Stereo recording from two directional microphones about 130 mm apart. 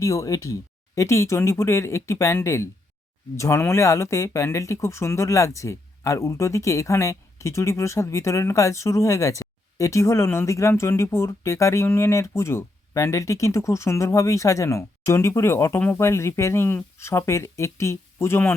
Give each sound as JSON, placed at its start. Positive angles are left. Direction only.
{"t": 0.0, "sound": "speech", "side_deg": 25}